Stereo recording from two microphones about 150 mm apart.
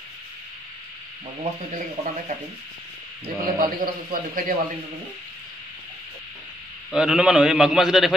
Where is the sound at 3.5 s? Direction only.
75° right (ahead or behind).